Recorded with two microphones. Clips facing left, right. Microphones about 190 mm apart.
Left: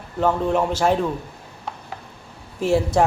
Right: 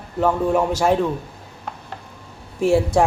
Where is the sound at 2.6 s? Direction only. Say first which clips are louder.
Right 2 dB; 5° right (ahead or behind).